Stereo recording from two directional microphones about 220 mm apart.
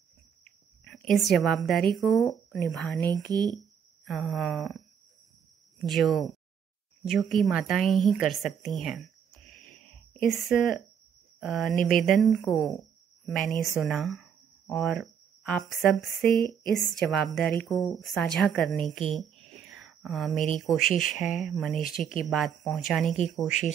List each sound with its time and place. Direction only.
0.8 s a woman's voice: 5° left (ahead or behind)
3.1 s speech: 20° right (ahead or behind)
4.0 s a woman's voice: centre (ahead or behind)
10.1 s a woman's voice: centre (ahead or behind)
19.1 s a sound: centre (ahead or behind)
20.5 s a woman's voice: centre (ahead or behind)
20.8 s speech: 40° left (ahead or behind)
21.1 s a woman's voice: centre (ahead or behind)